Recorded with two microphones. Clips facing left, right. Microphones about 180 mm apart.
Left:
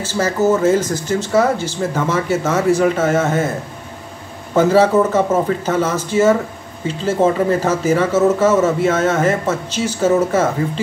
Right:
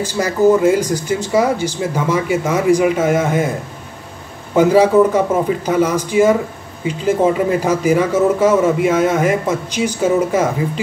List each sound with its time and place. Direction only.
0.0 s speech: 15° right (ahead or behind)
4.6 s speech: 10° right (ahead or behind)